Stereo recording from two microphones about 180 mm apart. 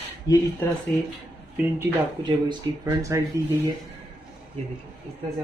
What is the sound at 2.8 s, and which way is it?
Speech, 20° right (ahead or behind).